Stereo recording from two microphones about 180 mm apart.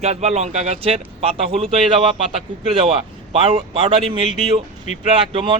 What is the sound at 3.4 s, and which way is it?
A man's voice, 35° right (ahead or behind).